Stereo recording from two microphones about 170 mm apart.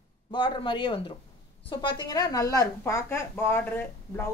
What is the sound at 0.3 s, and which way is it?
A woman's voice, 30° left (ahead or behind).